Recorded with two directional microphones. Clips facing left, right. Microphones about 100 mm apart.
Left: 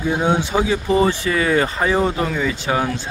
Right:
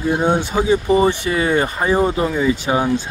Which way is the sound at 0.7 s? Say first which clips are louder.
Right 4 dB; 20° right (ahead or behind).